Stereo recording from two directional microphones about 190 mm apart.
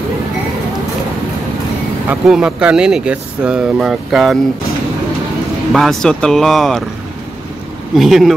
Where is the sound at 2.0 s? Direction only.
5° right (ahead or behind).